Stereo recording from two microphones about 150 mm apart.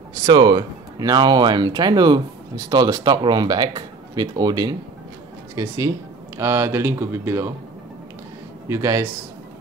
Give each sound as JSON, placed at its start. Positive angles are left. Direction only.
{"t": 0.3, "sound": "speech", "side_deg": -30}
{"t": 8.6, "sound": "speech", "side_deg": -20}